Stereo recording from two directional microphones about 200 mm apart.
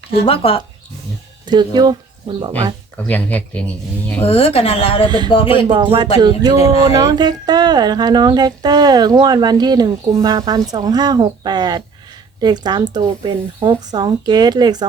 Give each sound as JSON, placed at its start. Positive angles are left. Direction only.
{"t": 0.3, "sound": "a woman's voice", "side_deg": 30}
{"t": 1.5, "sound": "speech", "side_deg": -20}
{"t": 3.1, "sound": "speech", "side_deg": 10}
{"t": 4.3, "sound": "a woman's voice", "side_deg": 30}
{"t": 5.0, "sound": "speech", "side_deg": -20}
{"t": 5.3, "sound": "a woman's voice", "side_deg": 25}
{"t": 5.6, "sound": "speech", "side_deg": -25}